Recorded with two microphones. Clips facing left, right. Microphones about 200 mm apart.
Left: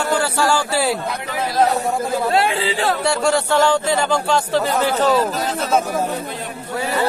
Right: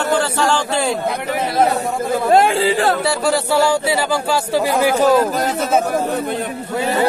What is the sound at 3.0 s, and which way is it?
A man's voice, 5° right (ahead or behind).